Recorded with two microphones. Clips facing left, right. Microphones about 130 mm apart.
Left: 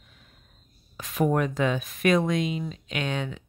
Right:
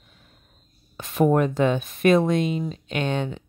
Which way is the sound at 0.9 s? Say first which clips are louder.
Right 3 dB; 30° right (ahead or behind).